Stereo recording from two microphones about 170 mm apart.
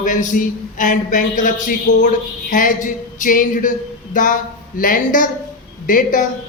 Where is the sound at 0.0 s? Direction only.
50° left (ahead or behind).